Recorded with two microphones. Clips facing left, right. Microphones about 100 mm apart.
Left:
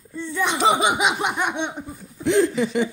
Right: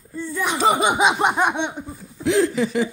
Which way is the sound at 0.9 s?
30° right (ahead or behind).